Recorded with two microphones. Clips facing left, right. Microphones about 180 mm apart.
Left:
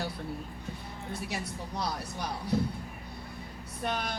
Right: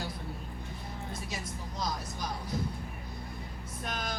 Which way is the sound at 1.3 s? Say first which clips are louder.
Left 3 dB; 65° left (ahead or behind).